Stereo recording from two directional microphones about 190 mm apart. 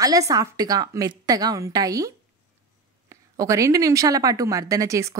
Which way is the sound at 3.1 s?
15° right (ahead or behind).